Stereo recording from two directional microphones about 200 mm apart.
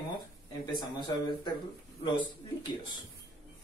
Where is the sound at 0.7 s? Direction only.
25° left (ahead or behind).